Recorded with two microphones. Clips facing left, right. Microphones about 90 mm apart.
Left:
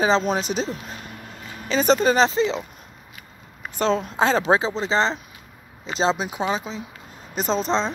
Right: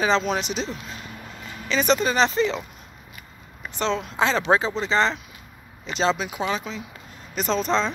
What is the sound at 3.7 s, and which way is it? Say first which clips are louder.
Speech: left 3 dB; 40° left (ahead or behind).